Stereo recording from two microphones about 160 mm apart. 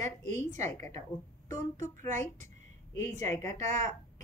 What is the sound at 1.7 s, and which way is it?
Speech, 55° right (ahead or behind).